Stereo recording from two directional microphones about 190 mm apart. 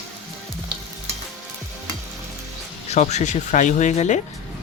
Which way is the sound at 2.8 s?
35° left (ahead or behind).